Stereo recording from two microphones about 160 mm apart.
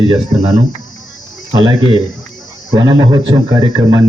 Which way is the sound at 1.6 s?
30° right (ahead or behind).